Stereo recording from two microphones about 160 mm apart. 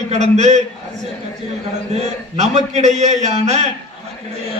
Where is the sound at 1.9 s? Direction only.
45° right (ahead or behind).